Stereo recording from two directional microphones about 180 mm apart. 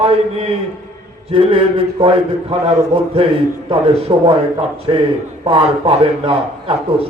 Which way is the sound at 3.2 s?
30° right (ahead or behind).